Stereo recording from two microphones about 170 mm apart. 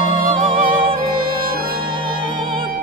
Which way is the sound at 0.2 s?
35° right (ahead or behind).